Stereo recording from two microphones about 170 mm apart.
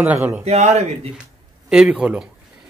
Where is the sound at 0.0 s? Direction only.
10° right (ahead or behind).